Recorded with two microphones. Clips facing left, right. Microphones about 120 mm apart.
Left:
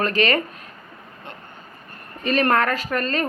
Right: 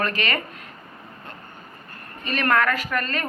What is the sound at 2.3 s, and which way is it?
Speech, 35° left (ahead or behind).